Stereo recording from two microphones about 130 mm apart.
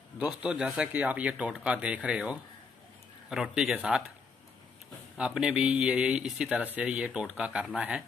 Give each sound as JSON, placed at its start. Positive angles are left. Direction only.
{"t": 0.2, "sound": "speech", "side_deg": -10}
{"t": 5.1, "sound": "speech", "side_deg": -5}